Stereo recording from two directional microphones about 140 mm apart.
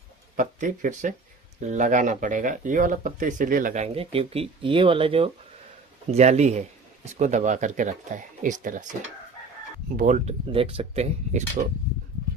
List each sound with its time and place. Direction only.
0.4 s speech: 65° right (ahead or behind)
3.9 s speech: 45° right (ahead or behind)
6.0 s speech: 50° right (ahead or behind)
9.9 s speech: 70° right (ahead or behind)
10.2 s speech: 40° right (ahead or behind); by 11.7 s 60° right (ahead or behind)